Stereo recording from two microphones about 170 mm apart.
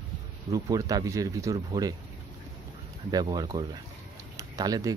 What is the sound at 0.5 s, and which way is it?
Speech, 20° right (ahead or behind).